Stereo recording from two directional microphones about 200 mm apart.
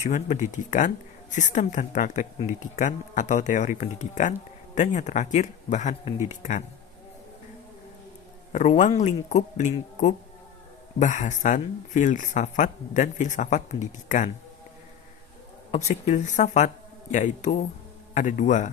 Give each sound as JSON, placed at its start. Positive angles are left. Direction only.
{"t": 0.0, "sound": "speech", "side_deg": 35}
{"t": 8.5, "sound": "speech", "side_deg": 35}
{"t": 15.7, "sound": "speech", "side_deg": 35}